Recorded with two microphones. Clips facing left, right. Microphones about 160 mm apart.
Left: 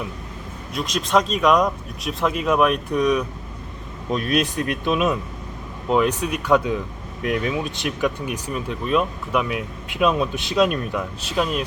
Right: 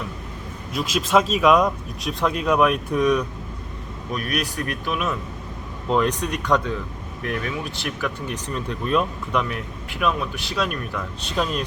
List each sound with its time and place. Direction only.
0.7 s speech: 5° right (ahead or behind)
4.1 s speech: 25° left (ahead or behind)
5.9 s speech: 5° left (ahead or behind)
7.2 s speech: 20° left (ahead or behind)
11.2 s speech: 5° left (ahead or behind)